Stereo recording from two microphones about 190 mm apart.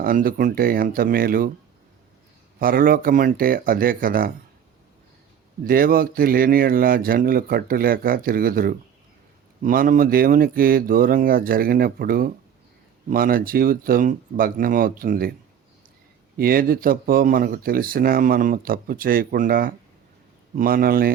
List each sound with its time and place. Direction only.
0.0 s speech: 50° right (ahead or behind)
2.6 s speech: 50° right (ahead or behind)
5.6 s speech: 50° right (ahead or behind)
16.4 s speech: 50° right (ahead or behind)